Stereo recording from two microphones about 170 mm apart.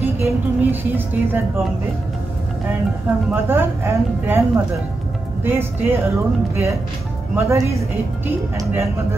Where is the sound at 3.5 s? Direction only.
15° right (ahead or behind).